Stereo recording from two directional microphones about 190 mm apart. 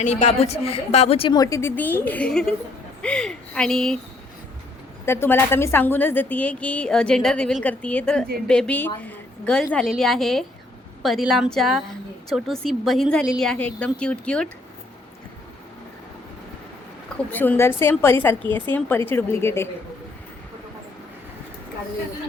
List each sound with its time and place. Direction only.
0.0 s a woman's voice: 40° left (ahead or behind); by 3.9 s centre (ahead or behind)
5.0 s a woman's voice: 10° left (ahead or behind)
17.3 s a woman's voice: 10° left (ahead or behind)